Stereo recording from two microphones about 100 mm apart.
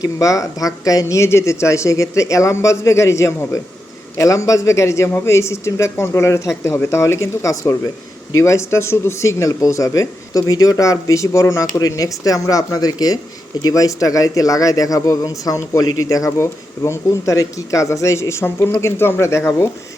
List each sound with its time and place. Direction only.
0.0 s speech: 35° left (ahead or behind)